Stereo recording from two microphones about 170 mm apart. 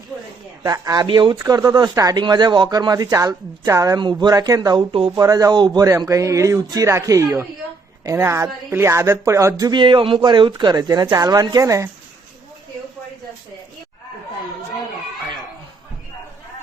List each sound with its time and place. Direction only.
0.6 s a woman's voice: 20° right (ahead or behind)